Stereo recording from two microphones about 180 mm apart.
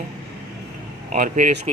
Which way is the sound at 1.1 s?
45° right (ahead or behind).